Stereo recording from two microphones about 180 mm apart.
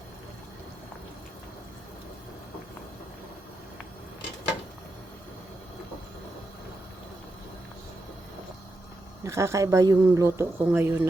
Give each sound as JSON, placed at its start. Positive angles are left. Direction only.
{"t": 9.2, "sound": "speech", "side_deg": -15}